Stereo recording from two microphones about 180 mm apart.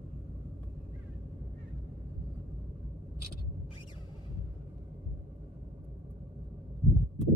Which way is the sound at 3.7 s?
25° left (ahead or behind).